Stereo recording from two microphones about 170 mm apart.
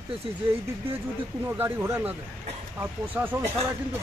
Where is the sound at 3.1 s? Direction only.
10° right (ahead or behind).